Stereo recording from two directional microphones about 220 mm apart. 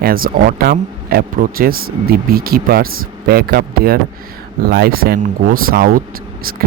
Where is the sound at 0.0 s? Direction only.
40° right (ahead or behind).